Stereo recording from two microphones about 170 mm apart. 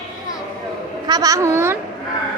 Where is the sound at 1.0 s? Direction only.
20° right (ahead or behind).